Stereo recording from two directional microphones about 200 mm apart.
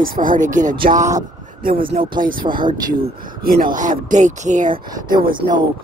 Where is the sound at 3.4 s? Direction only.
45° right (ahead or behind).